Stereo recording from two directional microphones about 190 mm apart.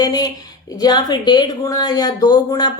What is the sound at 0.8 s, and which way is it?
Speech, 20° left (ahead or behind).